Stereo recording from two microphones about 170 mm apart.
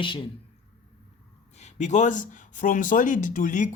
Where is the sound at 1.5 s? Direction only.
40° left (ahead or behind).